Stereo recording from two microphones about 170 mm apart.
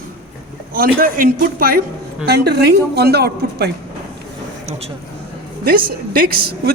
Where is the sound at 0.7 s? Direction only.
55° right (ahead or behind).